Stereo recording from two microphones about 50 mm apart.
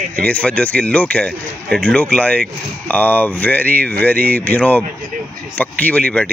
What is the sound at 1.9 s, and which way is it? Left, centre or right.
Speech, left.